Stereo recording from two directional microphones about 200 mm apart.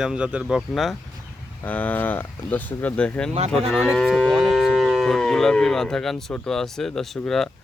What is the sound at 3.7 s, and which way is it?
Moo, centre (ahead or behind).